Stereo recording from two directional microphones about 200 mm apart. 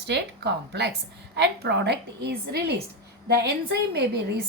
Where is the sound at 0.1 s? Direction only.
55° right (ahead or behind).